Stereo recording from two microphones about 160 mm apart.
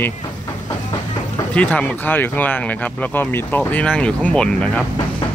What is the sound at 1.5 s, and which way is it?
Speech, 10° left (ahead or behind).